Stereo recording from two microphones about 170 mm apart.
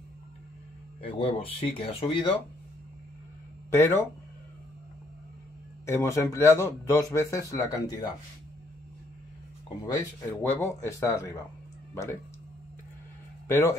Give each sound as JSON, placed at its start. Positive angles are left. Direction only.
{"t": 1.1, "sound": "speech", "side_deg": 35}
{"t": 3.7, "sound": "speech", "side_deg": 15}
{"t": 5.9, "sound": "speech", "side_deg": 15}
{"t": 10.2, "sound": "speech", "side_deg": 15}
{"t": 13.5, "sound": "a man's voice", "side_deg": 15}